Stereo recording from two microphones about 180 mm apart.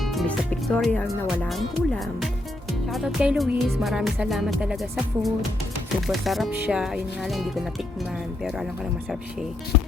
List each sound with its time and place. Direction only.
0.0 s speech: centre (ahead or behind)